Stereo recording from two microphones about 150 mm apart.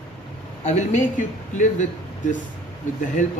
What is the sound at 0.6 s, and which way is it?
A man's voice, 50° left (ahead or behind).